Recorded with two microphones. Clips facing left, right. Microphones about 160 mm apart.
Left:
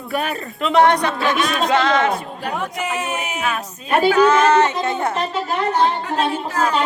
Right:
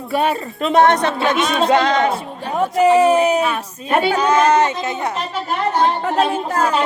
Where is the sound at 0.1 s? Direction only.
30° right (ahead or behind).